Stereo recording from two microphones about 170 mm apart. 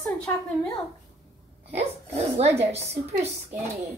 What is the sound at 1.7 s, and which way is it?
A woman's voice, 40° right (ahead or behind).